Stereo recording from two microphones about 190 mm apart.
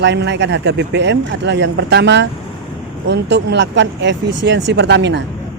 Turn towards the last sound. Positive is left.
turn(degrees=-65)  # may be behind; listen again after turning